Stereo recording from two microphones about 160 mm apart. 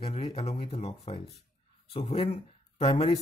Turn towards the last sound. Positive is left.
turn(degrees=35)  # may be behind; listen again after turning